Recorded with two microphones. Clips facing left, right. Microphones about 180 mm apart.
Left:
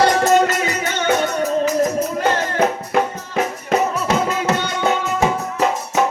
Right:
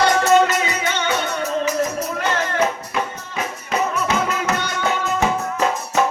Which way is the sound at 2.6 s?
50° left (ahead or behind).